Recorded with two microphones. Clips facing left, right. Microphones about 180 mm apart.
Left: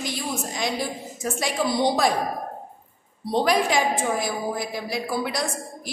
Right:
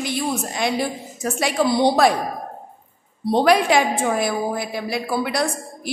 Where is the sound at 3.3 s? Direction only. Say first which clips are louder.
Right 5 dB; 70° right (ahead or behind).